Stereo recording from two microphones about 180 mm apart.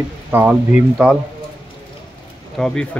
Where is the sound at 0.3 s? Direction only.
10° right (ahead or behind).